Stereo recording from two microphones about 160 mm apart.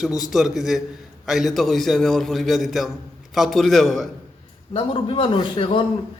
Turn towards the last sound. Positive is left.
turn(degrees=30)  # may be behind; listen again after turning